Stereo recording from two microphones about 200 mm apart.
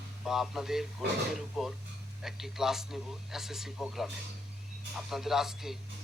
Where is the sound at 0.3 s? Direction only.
Centre (ahead or behind).